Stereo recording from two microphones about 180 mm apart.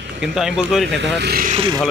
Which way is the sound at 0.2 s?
5° right (ahead or behind).